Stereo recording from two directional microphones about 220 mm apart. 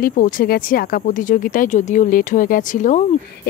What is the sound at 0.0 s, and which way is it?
Speech, 40° left (ahead or behind).